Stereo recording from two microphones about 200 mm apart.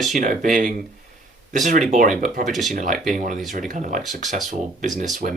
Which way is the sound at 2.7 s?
40° right (ahead or behind).